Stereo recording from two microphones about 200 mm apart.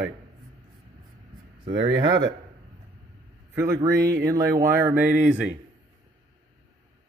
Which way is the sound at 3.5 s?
15° right (ahead or behind).